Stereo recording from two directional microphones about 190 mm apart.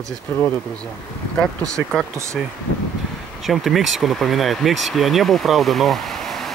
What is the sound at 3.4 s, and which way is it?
Speech, centre (ahead or behind).